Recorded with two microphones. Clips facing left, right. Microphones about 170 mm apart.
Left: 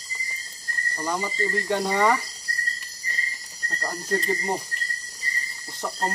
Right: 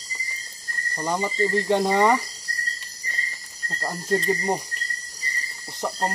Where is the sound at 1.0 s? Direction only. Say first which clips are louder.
Right 3 dB; 20° right (ahead or behind).